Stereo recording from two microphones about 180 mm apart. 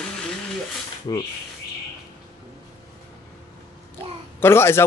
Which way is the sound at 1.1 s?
25° left (ahead or behind).